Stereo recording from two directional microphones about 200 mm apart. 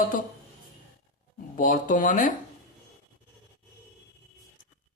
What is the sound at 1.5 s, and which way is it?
Speech, 40° left (ahead or behind).